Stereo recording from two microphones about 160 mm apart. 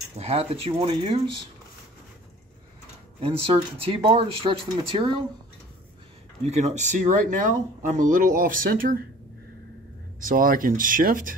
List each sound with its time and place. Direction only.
0.2 s speech: 40° right (ahead or behind)
3.2 s speech: 40° right (ahead or behind)
6.4 s speech: 45° right (ahead or behind); by 8.9 s 60° right (ahead or behind)
10.2 s speech: 60° right (ahead or behind)